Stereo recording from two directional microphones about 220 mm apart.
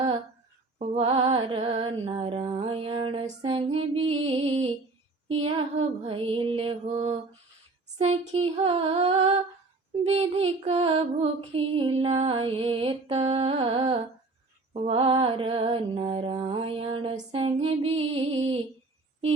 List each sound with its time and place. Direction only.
0.8 s music: 25° right (ahead or behind)
4.0 s music: 65° right (ahead or behind)
4.3 s music: 25° right (ahead or behind)